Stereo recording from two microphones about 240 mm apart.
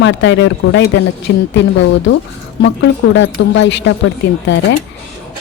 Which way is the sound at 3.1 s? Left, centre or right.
Left.